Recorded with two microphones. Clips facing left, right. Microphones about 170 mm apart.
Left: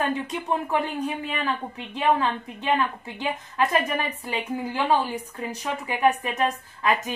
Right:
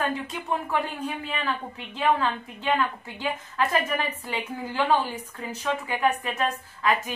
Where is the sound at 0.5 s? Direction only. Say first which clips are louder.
Left 2 dB; 20° left (ahead or behind).